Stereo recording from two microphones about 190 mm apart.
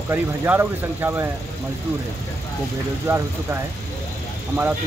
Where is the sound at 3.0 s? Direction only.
15° right (ahead or behind).